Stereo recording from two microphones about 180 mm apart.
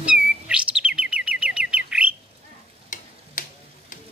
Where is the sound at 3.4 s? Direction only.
45° left (ahead or behind).